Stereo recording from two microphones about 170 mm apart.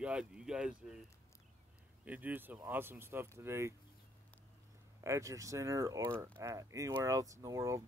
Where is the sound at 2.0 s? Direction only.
10° right (ahead or behind).